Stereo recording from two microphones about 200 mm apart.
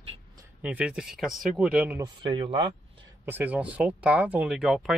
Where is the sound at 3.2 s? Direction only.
10° right (ahead or behind).